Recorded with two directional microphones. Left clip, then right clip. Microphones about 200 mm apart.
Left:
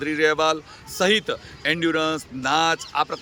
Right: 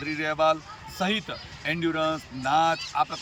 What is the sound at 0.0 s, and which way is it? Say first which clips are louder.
A man's voice: left 5 dB; 45° left (ahead or behind).